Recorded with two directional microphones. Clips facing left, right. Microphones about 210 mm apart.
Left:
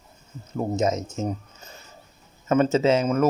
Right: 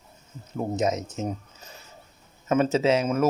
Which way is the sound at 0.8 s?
Centre (ahead or behind).